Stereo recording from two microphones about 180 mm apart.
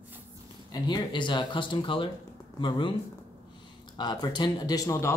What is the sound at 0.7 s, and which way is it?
Speech, 25° left (ahead or behind).